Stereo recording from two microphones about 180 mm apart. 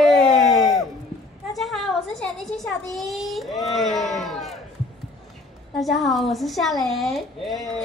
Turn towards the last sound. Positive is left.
turn(degrees=0)  # may be behind; listen again after turning